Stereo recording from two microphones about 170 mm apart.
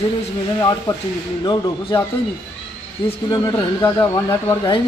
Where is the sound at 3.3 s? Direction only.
25° left (ahead or behind).